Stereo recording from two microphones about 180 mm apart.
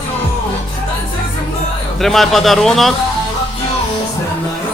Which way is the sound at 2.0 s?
Centre (ahead or behind).